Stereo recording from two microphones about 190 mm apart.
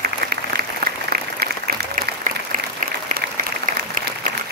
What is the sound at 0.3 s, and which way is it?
Applause, 55° right (ahead or behind).